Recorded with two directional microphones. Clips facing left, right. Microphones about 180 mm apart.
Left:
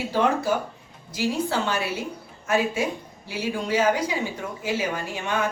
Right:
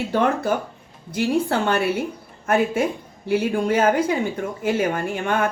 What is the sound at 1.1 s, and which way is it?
Speech, 55° right (ahead or behind).